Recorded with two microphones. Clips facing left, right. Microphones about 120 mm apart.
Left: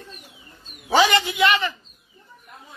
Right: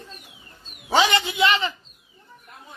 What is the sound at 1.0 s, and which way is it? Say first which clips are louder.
Speech: left 2 dB; 25° right (ahead or behind).